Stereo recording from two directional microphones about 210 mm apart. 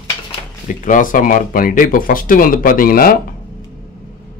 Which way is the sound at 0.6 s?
40° left (ahead or behind).